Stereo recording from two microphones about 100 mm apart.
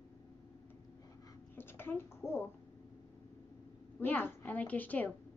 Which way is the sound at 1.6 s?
25° left (ahead or behind).